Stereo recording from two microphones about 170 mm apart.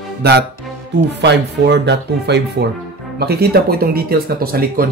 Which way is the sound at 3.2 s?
65° right (ahead or behind).